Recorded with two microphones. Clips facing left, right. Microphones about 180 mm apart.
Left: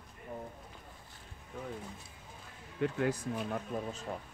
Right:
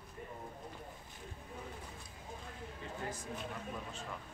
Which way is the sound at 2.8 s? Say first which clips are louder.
Left 13 dB; 70° left (ahead or behind).